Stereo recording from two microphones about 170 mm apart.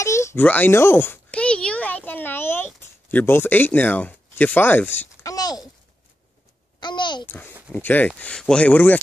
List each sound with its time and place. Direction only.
0.0 s a sound: 15° left (ahead or behind)
6.8 s a child's voice: 25° left (ahead or behind)
7.7 s speech: 10° left (ahead or behind)